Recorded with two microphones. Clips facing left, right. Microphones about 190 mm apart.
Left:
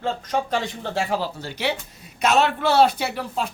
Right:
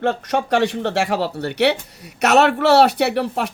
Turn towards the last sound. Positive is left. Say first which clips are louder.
# right 7 dB
turn(degrees=-70)  # may be behind; listen again after turning